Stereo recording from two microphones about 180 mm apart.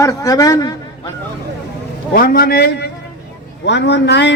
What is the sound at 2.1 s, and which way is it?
Speech, 55° left (ahead or behind).